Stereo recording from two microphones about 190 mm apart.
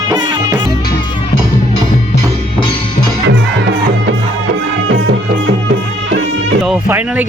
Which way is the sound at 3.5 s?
65° right (ahead or behind).